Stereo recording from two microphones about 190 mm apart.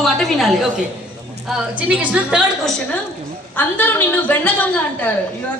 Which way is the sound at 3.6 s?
10° left (ahead or behind).